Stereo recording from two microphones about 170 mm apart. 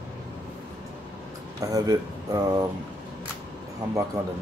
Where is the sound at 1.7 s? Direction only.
20° right (ahead or behind).